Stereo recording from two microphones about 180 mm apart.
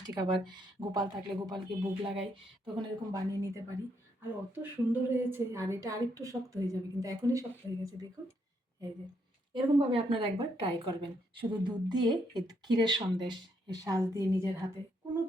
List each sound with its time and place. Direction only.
0.0 s speech: 20° right (ahead or behind)
4.2 s a woman's voice: 10° right (ahead or behind)
9.6 s a woman's voice: 30° right (ahead or behind)